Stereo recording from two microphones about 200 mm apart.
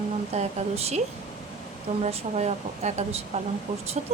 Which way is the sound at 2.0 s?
35° right (ahead or behind).